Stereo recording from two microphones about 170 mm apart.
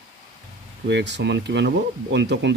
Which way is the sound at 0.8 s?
90° right.